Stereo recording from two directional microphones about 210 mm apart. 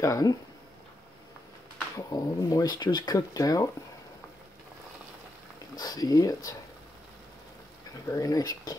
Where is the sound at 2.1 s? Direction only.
15° left (ahead or behind).